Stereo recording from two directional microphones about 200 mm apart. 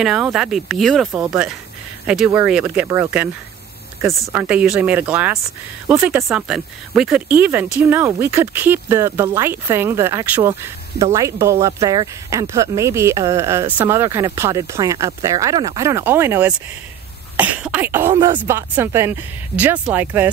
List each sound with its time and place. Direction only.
0.0 s speech: 5° right (ahead or behind)
18.1 s speech: 20° right (ahead or behind)
18.4 s speech: 10° right (ahead or behind)